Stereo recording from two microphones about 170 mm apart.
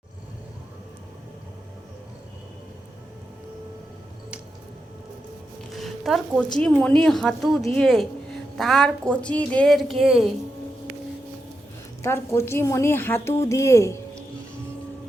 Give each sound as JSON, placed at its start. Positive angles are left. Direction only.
{"t": 5.7, "sound": "a woman's voice", "side_deg": 0}
{"t": 12.0, "sound": "a woman's voice", "side_deg": 15}